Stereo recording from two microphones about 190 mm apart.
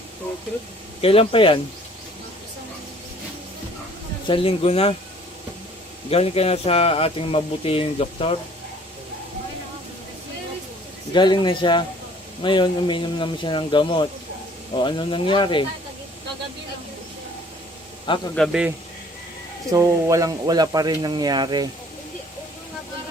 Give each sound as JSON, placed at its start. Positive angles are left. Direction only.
{"t": 1.0, "sound": "speech", "side_deg": 30}
{"t": 4.3, "sound": "speech", "side_deg": 30}
{"t": 6.1, "sound": "speech", "side_deg": 30}
{"t": 11.1, "sound": "speech", "side_deg": 25}
{"t": 18.3, "sound": "a man's voice", "side_deg": 5}
{"t": 19.7, "sound": "speech", "side_deg": -15}